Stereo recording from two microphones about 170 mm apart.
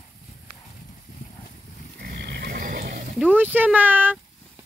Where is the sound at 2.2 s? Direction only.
75° right (ahead or behind).